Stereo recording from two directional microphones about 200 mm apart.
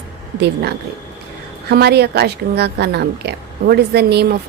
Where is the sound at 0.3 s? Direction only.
55° right (ahead or behind).